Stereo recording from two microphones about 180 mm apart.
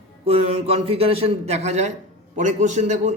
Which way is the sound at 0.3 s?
35° right (ahead or behind).